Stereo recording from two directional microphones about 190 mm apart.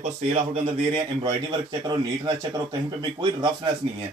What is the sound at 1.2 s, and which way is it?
Speech, 20° right (ahead or behind).